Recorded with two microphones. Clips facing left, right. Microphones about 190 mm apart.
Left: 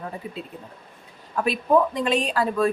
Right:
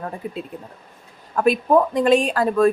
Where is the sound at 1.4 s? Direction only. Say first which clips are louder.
Right 4 dB; 50° right (ahead or behind).